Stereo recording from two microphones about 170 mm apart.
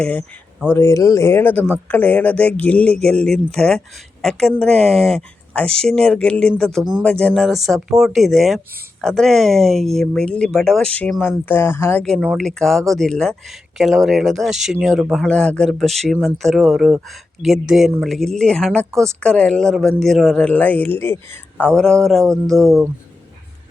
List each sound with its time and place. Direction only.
0.0 s speech: 10° left (ahead or behind)
22.5 s speech: 20° right (ahead or behind)